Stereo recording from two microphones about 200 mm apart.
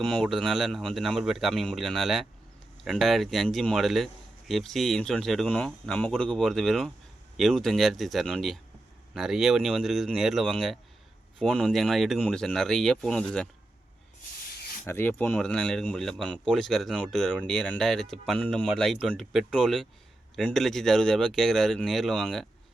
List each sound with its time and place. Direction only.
0.0 s speech: centre (ahead or behind)
14.4 s rub: 50° left (ahead or behind)
14.8 s speech: 10° left (ahead or behind)